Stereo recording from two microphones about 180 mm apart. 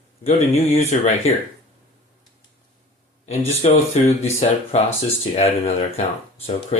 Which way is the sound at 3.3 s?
35° left (ahead or behind).